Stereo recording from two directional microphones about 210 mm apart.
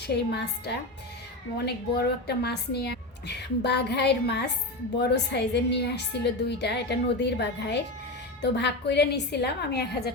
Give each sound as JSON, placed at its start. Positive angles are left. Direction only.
{"t": 0.1, "sound": "a woman's voice", "side_deg": 50}